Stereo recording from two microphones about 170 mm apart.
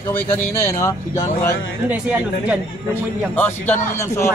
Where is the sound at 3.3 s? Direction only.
10° left (ahead or behind).